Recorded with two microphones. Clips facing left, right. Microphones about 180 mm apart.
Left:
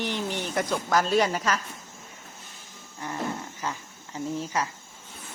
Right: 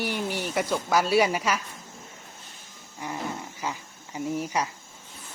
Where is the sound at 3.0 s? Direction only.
10° right (ahead or behind).